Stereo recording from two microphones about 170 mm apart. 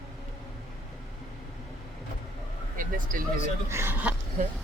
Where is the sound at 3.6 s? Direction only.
15° right (ahead or behind).